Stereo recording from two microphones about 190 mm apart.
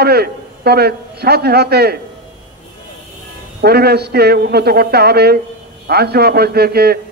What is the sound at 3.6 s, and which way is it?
A man's voice, 55° right (ahead or behind).